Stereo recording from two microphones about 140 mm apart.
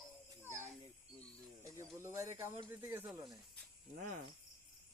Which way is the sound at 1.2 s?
20° right (ahead or behind).